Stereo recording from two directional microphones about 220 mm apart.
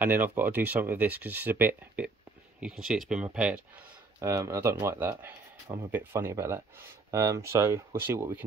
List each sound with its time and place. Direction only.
0.0 s speech: 10° right (ahead or behind)